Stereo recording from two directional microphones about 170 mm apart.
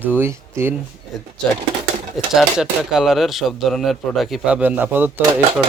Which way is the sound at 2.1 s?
Centre (ahead or behind).